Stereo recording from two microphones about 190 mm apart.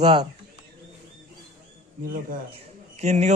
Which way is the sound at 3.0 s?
35° right (ahead or behind).